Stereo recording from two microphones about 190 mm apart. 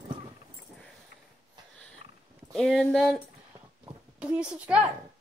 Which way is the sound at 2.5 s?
Centre (ahead or behind).